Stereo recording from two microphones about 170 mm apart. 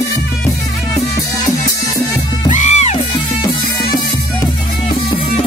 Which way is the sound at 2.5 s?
45° left (ahead or behind).